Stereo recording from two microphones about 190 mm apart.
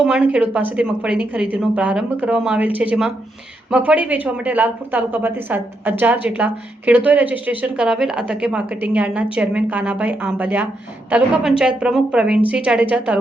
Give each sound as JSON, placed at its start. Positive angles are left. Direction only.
{"t": 0.0, "sound": "a woman's voice", "side_deg": -5}